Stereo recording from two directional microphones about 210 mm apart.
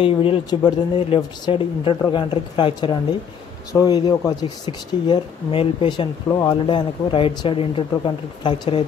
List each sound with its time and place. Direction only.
0.0 s speech: 25° left (ahead or behind)